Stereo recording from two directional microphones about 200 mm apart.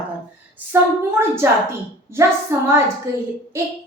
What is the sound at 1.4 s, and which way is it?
A woman's voice, 10° right (ahead or behind).